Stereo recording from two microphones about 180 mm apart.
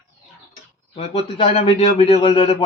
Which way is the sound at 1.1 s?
30° left (ahead or behind).